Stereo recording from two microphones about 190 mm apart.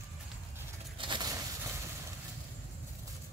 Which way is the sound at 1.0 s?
25° right (ahead or behind).